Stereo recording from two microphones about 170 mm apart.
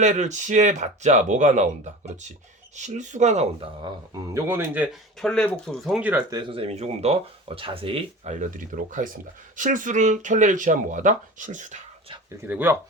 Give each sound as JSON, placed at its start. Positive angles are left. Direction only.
{"t": 0.0, "sound": "speech", "side_deg": -45}
{"t": 4.4, "sound": "speech", "side_deg": -15}
{"t": 5.2, "sound": "speech", "side_deg": 5}
{"t": 6.3, "sound": "speech", "side_deg": -30}
{"t": 12.4, "sound": "speech", "side_deg": -10}